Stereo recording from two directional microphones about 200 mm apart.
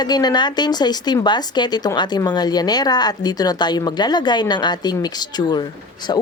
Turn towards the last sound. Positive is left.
turn(degrees=20)  # may be behind; listen again after turning